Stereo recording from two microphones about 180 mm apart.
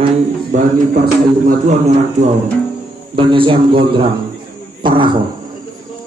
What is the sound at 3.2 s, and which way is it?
Speech, 30° right (ahead or behind).